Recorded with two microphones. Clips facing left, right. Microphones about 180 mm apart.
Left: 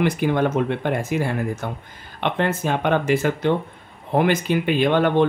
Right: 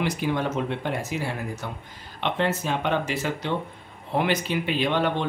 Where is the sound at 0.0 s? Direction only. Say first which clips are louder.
Left 6 dB; 55° left (ahead or behind).